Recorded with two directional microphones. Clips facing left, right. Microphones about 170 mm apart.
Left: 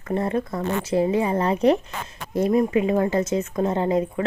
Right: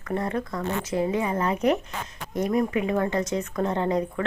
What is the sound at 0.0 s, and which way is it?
A woman's voice, 25° left (ahead or behind).